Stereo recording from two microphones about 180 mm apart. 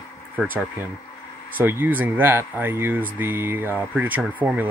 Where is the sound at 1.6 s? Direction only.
10° right (ahead or behind).